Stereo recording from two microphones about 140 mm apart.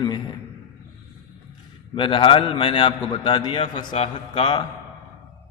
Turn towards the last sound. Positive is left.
turn(degrees=40)  # may be behind; listen again after turning